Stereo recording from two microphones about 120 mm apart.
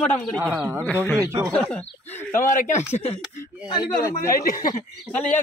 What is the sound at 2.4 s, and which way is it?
Speech, 90° left.